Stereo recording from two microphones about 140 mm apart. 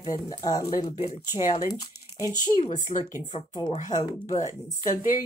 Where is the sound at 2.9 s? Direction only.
50° left (ahead or behind).